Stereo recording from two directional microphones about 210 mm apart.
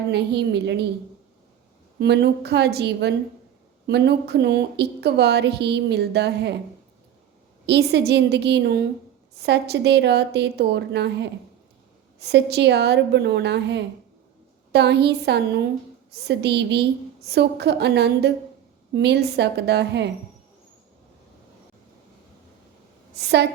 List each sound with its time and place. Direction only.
0.1 s a woman's voice: 55° right (ahead or behind)
2.0 s a woman's voice: 55° right (ahead or behind)
7.7 s a woman's voice: 50° right (ahead or behind)
23.1 s a woman's voice: 50° right (ahead or behind)